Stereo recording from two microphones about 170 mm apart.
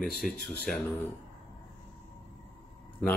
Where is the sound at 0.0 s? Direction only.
Centre (ahead or behind).